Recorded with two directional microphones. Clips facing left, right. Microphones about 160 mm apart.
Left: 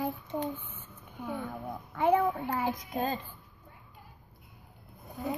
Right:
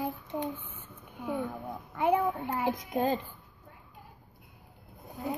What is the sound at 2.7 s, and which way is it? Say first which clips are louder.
Speech: right 3 dB; 25° right (ahead or behind).